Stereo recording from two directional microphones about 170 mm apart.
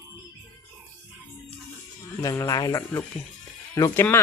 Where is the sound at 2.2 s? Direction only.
20° left (ahead or behind).